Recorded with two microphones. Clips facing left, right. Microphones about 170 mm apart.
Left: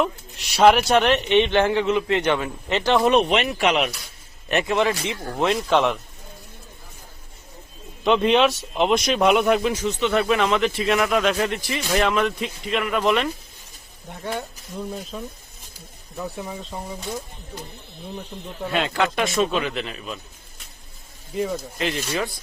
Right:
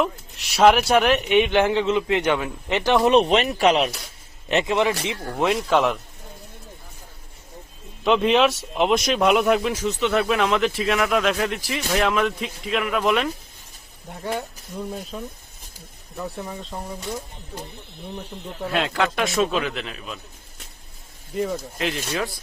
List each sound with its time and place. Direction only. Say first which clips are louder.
0.0 s speech: even; centre (ahead or behind); by 3.2 s 20° right (ahead or behind)
3.2 s speech: right 2 dB; 40° right (ahead or behind)
4.4 s a man's voice: even; 20° right (ahead or behind)
5.5 s speech: even; centre (ahead or behind)
8.0 s speech: even; centre (ahead or behind)
18.6 s speech: even; centre (ahead or behind)
21.3 s speech: even; centre (ahead or behind)